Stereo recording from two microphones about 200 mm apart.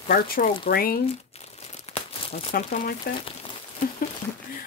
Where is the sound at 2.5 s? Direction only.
45° left (ahead or behind).